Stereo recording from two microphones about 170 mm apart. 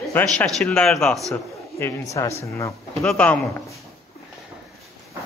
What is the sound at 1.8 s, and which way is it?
Speech, 20° left (ahead or behind).